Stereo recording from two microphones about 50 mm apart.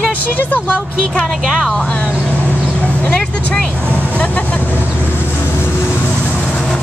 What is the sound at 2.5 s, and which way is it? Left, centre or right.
Vehicle, left.